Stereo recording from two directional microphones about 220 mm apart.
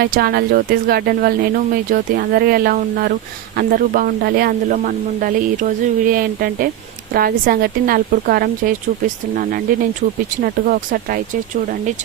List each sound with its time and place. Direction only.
0.0 s speech: 45° right (ahead or behind)